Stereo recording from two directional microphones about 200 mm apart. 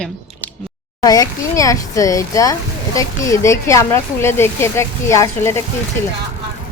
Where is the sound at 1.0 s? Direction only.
20° left (ahead or behind).